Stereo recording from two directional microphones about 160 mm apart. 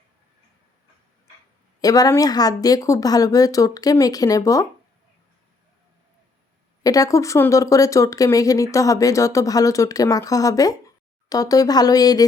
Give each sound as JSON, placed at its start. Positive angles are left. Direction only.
{"t": 1.8, "sound": "speech", "side_deg": 25}
{"t": 6.8, "sound": "speech", "side_deg": 20}